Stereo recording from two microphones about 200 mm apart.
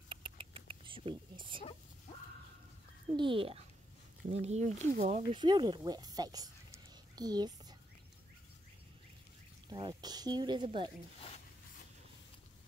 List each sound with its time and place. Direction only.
0.1 s rodents: 25° right (ahead or behind)
3.2 s speech: 25° right (ahead or behind)
9.7 s speech: 20° right (ahead or behind)